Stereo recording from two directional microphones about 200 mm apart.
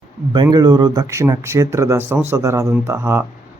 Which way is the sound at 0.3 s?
20° right (ahead or behind).